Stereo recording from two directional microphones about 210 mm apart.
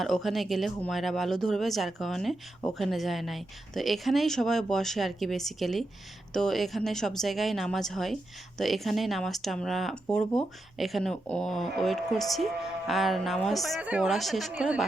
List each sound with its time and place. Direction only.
0.0 s a woman's voice: centre (ahead or behind)